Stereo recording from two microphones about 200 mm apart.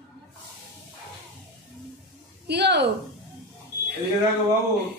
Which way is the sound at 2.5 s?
55° right (ahead or behind).